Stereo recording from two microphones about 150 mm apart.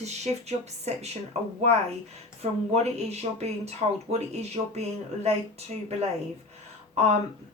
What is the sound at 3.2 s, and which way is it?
Speech, 45° right (ahead or behind).